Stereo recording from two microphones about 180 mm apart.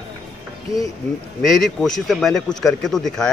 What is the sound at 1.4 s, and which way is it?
Speech, centre (ahead or behind).